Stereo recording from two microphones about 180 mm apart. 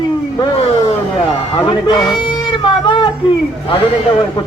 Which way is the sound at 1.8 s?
25° left (ahead or behind).